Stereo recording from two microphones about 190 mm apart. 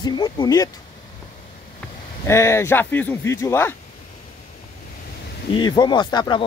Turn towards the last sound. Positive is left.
turn(degrees=25)  # may be behind; listen again after turning